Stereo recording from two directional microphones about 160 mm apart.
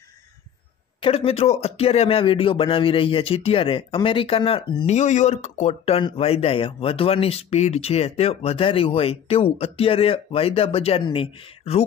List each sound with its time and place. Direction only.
1.0 s speech: 40° left (ahead or behind)
4.8 s speech: 45° left (ahead or behind)